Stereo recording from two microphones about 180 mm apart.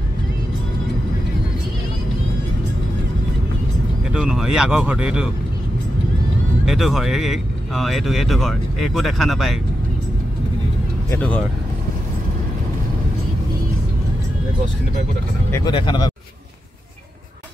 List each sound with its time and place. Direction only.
4.1 s speech: 5° right (ahead or behind)
6.6 s speech: centre (ahead or behind)
11.1 s speech: 10° left (ahead or behind)
15.5 s speech: 25° left (ahead or behind)